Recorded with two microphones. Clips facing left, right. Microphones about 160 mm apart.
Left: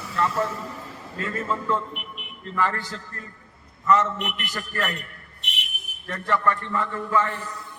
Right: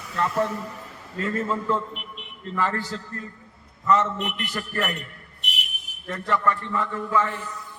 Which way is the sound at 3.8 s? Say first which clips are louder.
Even; 20° right (ahead or behind).